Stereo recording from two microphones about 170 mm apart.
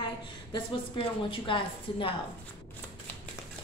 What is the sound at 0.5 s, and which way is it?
A woman's voice, 30° left (ahead or behind).